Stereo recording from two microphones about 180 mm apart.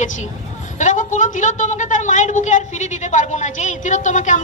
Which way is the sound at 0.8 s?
45° left (ahead or behind).